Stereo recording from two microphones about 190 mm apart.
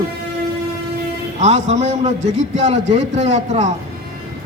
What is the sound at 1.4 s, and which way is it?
A man's voice, 35° right (ahead or behind).